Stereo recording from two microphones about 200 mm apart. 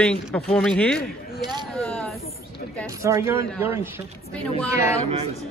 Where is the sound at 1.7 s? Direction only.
5° left (ahead or behind).